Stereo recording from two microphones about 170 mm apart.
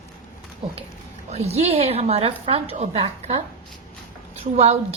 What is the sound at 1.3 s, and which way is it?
A woman's voice, 40° right (ahead or behind).